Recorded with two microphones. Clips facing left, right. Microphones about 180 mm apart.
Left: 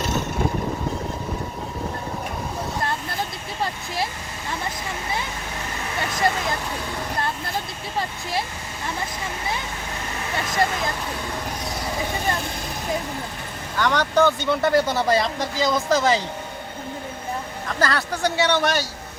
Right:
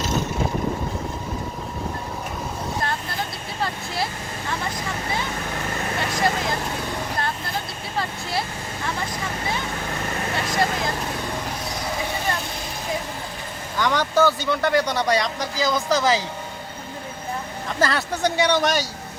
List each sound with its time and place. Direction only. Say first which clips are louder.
13.7 s speech: even; 10° right (ahead or behind)
17.7 s speech: right 1 dB; 20° right (ahead or behind)